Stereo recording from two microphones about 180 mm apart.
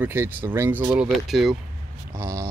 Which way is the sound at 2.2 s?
20° right (ahead or behind).